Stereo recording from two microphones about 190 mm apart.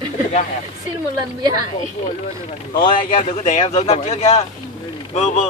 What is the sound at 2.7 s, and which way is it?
Speech, 45° left (ahead or behind).